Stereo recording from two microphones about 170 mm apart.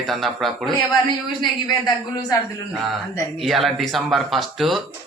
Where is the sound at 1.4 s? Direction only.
25° left (ahead or behind).